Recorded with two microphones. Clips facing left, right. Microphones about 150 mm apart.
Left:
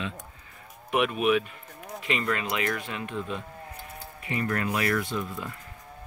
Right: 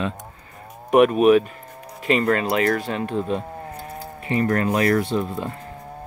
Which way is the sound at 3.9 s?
35° right (ahead or behind).